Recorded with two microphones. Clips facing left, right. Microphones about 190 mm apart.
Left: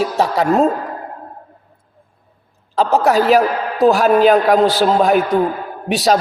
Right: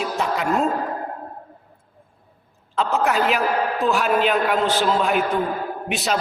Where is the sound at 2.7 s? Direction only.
40° left (ahead or behind).